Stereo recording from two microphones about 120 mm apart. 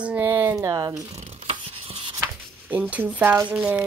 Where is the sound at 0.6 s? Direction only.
25° right (ahead or behind).